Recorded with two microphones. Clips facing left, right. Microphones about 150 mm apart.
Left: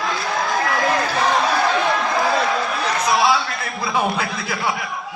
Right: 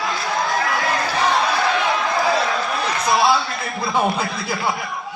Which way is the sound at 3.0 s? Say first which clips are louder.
Right 1 dB; centre (ahead or behind).